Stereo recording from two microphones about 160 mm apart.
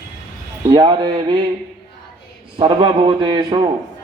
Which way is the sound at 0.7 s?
25° right (ahead or behind).